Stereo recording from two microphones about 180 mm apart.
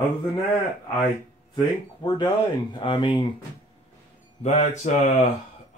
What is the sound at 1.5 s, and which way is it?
Speech, 25° left (ahead or behind).